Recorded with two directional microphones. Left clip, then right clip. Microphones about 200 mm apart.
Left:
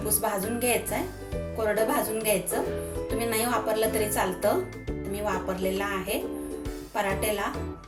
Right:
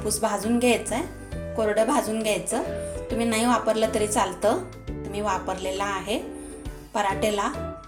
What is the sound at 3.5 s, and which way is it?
Speech, 40° right (ahead or behind).